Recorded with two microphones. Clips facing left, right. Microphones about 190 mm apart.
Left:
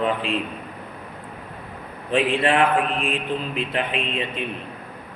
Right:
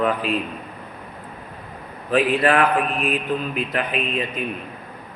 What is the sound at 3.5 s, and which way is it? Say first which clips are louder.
Speech: right 1 dB; 25° left (ahead or behind).